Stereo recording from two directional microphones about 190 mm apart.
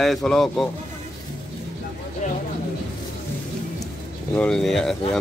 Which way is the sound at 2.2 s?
40° left (ahead or behind).